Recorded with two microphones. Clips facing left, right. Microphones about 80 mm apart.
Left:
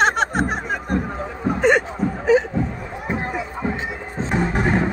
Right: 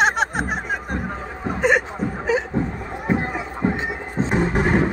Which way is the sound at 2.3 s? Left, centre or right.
Centre.